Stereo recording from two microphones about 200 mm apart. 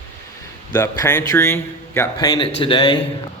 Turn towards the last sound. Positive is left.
turn(degrees=25)  # may be behind; listen again after turning